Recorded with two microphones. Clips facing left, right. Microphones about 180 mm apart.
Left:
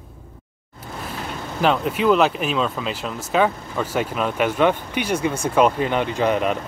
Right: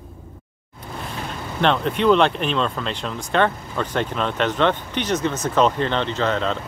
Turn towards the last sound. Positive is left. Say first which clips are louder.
# left 2 dB
turn(degrees=15)  # may be behind; listen again after turning